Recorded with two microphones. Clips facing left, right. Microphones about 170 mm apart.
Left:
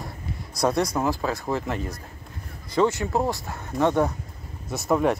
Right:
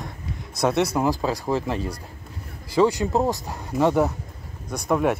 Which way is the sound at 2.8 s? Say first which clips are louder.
Right 3 dB; 15° right (ahead or behind).